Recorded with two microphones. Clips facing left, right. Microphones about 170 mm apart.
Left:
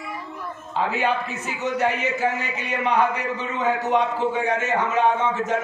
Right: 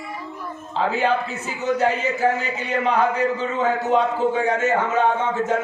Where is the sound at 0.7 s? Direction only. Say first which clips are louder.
Right 2 dB; 30° right (ahead or behind).